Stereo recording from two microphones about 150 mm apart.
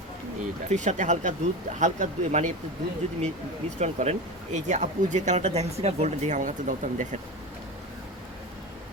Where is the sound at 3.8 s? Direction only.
50° right (ahead or behind).